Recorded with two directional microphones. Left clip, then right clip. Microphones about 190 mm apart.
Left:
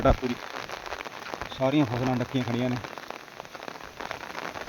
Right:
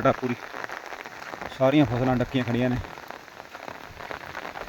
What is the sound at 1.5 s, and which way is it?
Speech, 15° right (ahead or behind).